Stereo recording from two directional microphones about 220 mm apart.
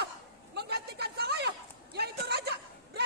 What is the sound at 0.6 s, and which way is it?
Chatter, 45° right (ahead or behind).